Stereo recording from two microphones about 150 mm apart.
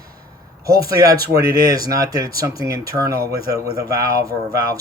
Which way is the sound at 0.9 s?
25° right (ahead or behind).